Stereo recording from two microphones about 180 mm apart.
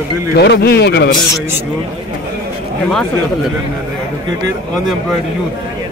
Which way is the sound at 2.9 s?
5° left (ahead or behind).